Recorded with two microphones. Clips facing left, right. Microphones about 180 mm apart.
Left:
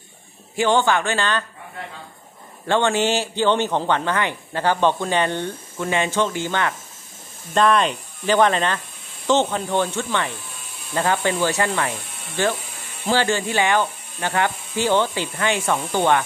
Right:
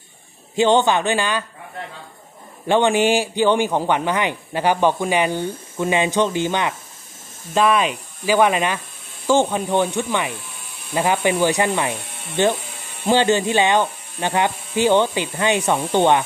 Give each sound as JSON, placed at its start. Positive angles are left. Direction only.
{"t": 0.6, "sound": "speech", "side_deg": -20}
{"t": 2.6, "sound": "a man's voice", "side_deg": -15}
{"t": 7.5, "sound": "a man's voice", "side_deg": -5}